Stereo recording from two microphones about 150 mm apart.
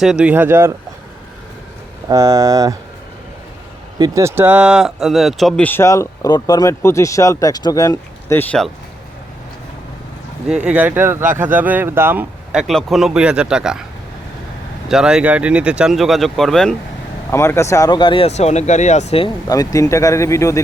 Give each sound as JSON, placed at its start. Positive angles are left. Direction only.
{"t": 0.0, "sound": "speech", "side_deg": -5}
{"t": 2.0, "sound": "speech", "side_deg": -20}
{"t": 3.9, "sound": "speech", "side_deg": -25}
{"t": 10.5, "sound": "speech", "side_deg": -5}
{"t": 14.8, "sound": "speech", "side_deg": -5}
{"t": 17.3, "sound": "speech", "side_deg": 20}
{"t": 19.5, "sound": "speech", "side_deg": 25}